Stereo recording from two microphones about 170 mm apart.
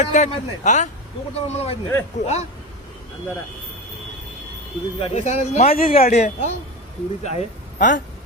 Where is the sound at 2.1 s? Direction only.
40° left (ahead or behind).